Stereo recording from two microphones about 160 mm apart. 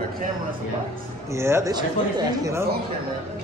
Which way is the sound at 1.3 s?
15° right (ahead or behind).